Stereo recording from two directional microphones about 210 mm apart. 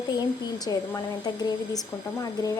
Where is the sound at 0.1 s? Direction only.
20° left (ahead or behind).